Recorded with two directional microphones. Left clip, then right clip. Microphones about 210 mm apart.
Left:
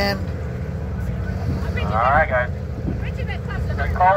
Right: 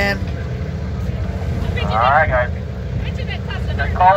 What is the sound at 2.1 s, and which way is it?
Vehicle, 45° left (ahead or behind).